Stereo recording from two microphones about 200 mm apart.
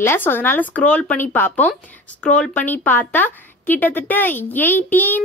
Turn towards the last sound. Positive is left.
turn(degrees=10)  # may be behind; listen again after turning